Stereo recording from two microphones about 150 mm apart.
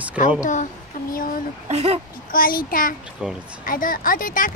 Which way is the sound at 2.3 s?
70° left (ahead or behind).